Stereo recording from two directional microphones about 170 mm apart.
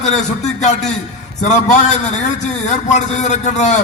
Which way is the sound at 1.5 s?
45° left (ahead or behind).